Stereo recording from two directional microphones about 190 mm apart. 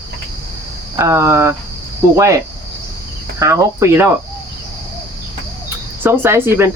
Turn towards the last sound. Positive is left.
turn(degrees=-10)  # may be behind; listen again after turning